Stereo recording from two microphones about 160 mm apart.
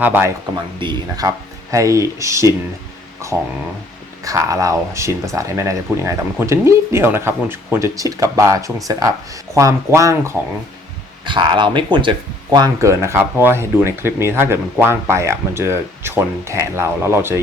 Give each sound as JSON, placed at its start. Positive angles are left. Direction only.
{"t": 0.0, "sound": "speech", "side_deg": -10}
{"t": 0.5, "sound": "speech", "side_deg": -25}
{"t": 11.3, "sound": "speech", "side_deg": -30}